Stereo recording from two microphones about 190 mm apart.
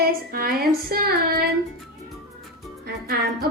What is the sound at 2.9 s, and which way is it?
Music, 60° right (ahead or behind).